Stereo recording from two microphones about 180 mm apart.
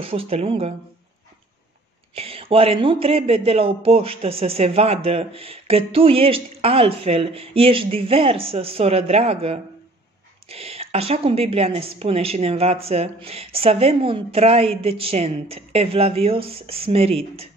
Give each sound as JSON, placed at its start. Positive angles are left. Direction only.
{"t": 0.0, "sound": "speech", "side_deg": -30}
{"t": 2.1, "sound": "speech", "side_deg": -30}